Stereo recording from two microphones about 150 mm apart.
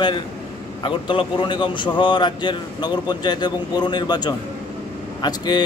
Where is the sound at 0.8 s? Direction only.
35° left (ahead or behind).